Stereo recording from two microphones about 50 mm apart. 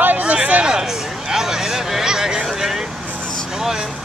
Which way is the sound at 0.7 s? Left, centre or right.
Centre.